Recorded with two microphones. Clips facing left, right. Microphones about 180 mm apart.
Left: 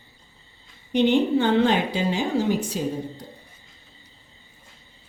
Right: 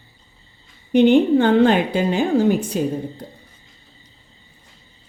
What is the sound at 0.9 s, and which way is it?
A woman's voice, 55° right (ahead or behind).